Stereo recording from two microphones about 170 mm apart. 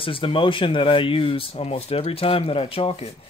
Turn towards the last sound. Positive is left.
turn(degrees=35)  # may be behind; listen again after turning